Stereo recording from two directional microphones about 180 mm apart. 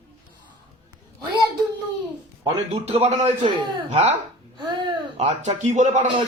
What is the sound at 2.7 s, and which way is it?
A man's voice, 35° right (ahead or behind).